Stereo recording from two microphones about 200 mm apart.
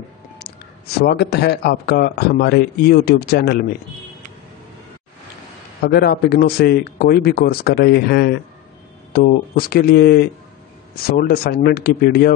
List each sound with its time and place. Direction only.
0.9 s a man's voice: 50° left (ahead or behind)
5.9 s a man's voice: 55° left (ahead or behind)